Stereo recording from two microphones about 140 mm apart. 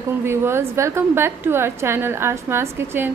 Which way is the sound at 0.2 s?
20° right (ahead or behind).